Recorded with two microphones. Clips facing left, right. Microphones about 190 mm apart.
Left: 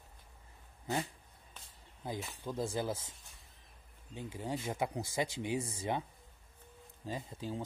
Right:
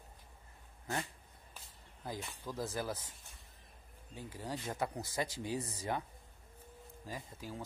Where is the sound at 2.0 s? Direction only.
20° left (ahead or behind).